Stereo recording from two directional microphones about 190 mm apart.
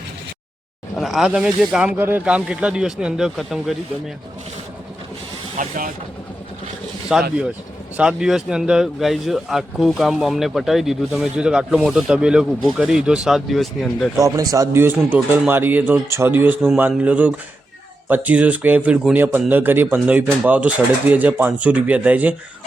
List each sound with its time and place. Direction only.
0.9 s speech: centre (ahead or behind)
5.5 s speech: 45° right (ahead or behind)
7.1 s speech: 5° right (ahead or behind)
14.2 s speech: 20° right (ahead or behind)